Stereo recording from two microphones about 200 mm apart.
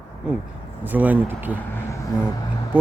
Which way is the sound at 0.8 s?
10° right (ahead or behind).